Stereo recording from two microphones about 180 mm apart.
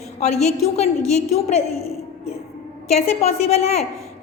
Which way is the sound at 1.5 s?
35° left (ahead or behind).